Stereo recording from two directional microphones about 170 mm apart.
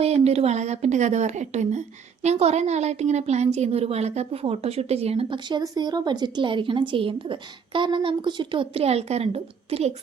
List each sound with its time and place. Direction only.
0.0 s a woman's voice: 35° right (ahead or behind)